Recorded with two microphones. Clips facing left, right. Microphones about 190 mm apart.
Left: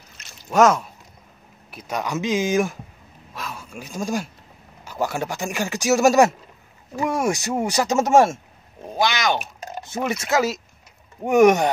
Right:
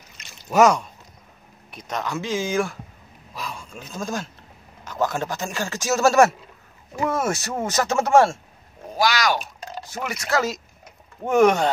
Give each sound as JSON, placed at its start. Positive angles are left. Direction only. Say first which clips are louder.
{"t": 0.2, "sound": "a sound", "louder": "even", "side_deg": 0}
{"t": 1.7, "sound": "speech", "louder": "left 2 dB", "side_deg": 5}
{"t": 3.3, "sound": "speech", "louder": "even", "side_deg": 5}